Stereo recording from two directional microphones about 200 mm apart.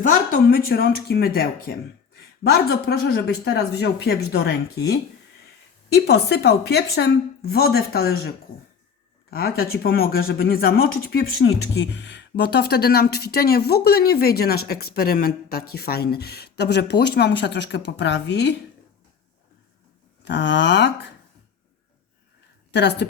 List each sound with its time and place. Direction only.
0.3 s speech: 50° left (ahead or behind)
5.9 s speech: 55° left (ahead or behind)
9.3 s speech: 50° left (ahead or behind)
20.2 s speech: 60° left (ahead or behind)
22.7 s speech: 60° left (ahead or behind)